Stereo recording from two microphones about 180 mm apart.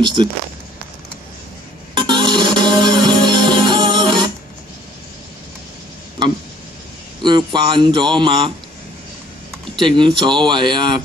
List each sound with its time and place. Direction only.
0.0 s speech: 25° right (ahead or behind)
2.0 s music: 25° right (ahead or behind)
7.2 s speech: 25° right (ahead or behind)
9.8 s speech: 25° right (ahead or behind)